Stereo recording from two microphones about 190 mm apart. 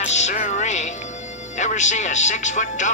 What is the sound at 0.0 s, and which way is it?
Speech, 35° left (ahead or behind).